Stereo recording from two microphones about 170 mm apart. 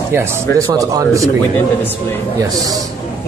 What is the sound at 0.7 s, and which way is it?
Speech, 20° right (ahead or behind).